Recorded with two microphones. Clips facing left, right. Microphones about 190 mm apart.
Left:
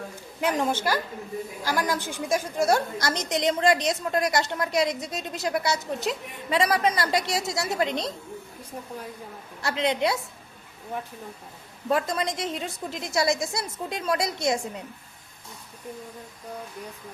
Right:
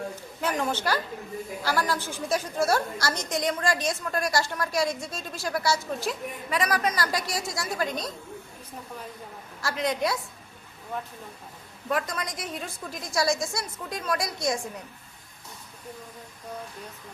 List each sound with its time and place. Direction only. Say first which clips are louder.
0.4 s a woman's voice: left 3 dB; 15° left (ahead or behind)
9.6 s a woman's voice: left 2 dB; 25° left (ahead or behind)
11.9 s a woman's voice: left 4 dB; 25° left (ahead or behind)